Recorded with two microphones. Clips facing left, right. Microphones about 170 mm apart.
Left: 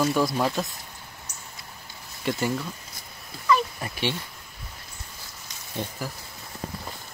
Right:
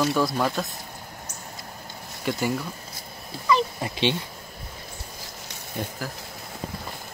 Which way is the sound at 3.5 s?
20° right (ahead or behind).